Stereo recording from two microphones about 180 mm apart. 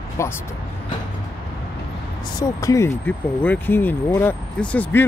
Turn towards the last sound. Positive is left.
turn(degrees=5)  # may be behind; listen again after turning